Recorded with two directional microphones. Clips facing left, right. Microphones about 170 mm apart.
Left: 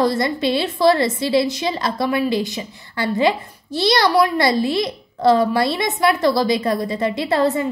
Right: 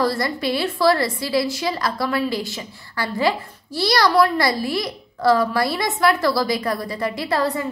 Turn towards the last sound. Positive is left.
turn(degrees=25)  # may be behind; listen again after turning